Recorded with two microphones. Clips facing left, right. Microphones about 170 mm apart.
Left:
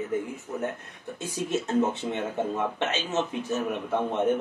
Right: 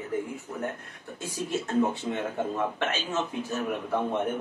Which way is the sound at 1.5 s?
20° left (ahead or behind).